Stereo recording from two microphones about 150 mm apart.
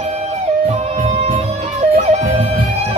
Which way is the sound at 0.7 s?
50° right (ahead or behind).